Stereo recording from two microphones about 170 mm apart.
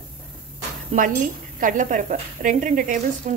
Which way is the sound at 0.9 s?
40° right (ahead or behind).